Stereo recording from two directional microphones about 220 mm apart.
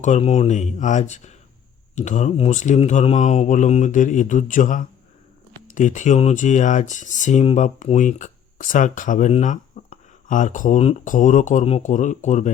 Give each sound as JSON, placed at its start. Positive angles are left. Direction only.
{"t": 0.0, "sound": "speech", "side_deg": 30}